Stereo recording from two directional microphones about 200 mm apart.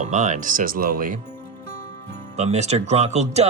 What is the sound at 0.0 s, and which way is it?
Speech, 35° right (ahead or behind).